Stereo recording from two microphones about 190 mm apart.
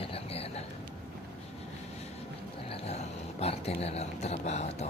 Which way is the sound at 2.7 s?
35° left (ahead or behind).